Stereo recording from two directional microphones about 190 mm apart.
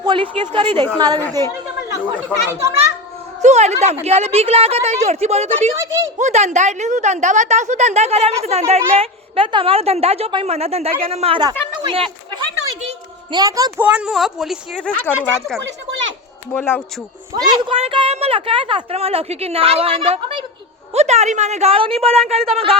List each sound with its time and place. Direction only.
0.0 s a woman's voice: 25° right (ahead or behind)
2.5 s a child's voice: 15° right (ahead or behind)
3.4 s a woman's voice: 35° right (ahead or behind)
5.7 s a child's voice: 15° right (ahead or behind)
6.1 s a woman's voice: 35° right (ahead or behind)
11.8 s a sound: 30° right (ahead or behind)
13.3 s a woman's voice: 20° right (ahead or behind)
13.8 s speech: 5° right (ahead or behind)
17.4 s a woman's voice: 30° right (ahead or behind)